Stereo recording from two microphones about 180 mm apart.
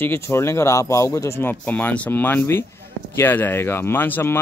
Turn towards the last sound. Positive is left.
turn(degrees=10)  # may be behind; listen again after turning